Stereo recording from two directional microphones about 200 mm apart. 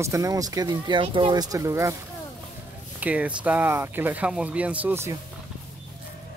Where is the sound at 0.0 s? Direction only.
15° right (ahead or behind).